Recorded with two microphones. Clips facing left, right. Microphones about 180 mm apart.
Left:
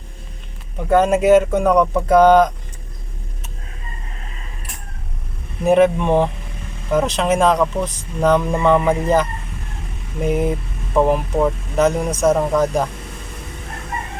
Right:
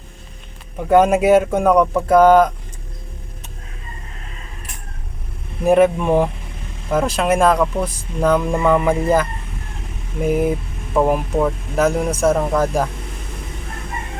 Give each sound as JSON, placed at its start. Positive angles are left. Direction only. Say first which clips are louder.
{"t": 0.9, "sound": "speech", "louder": "right 1 dB", "side_deg": -10}
{"t": 5.6, "sound": "speech", "louder": "even", "side_deg": -5}